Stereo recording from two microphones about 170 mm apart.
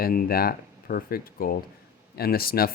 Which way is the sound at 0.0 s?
60° left (ahead or behind).